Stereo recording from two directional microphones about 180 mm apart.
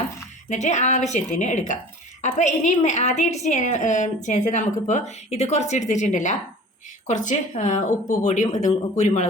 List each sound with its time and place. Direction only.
0.5 s a woman's voice: 40° left (ahead or behind)